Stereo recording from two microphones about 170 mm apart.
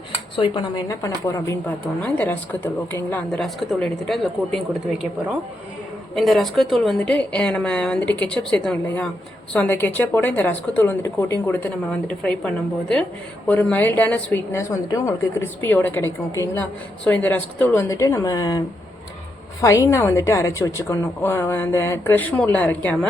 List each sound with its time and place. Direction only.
0.9 s a woman's voice: 15° left (ahead or behind); by 4.8 s centre (ahead or behind)
6.1 s a woman's voice: centre (ahead or behind); by 18.6 s 20° left (ahead or behind)
19.6 s a woman's voice: 20° left (ahead or behind)